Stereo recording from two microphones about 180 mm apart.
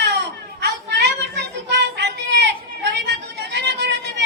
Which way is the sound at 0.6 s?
65° right (ahead or behind).